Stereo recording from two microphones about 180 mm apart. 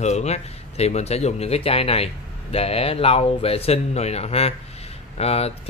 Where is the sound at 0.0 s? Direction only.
40° left (ahead or behind).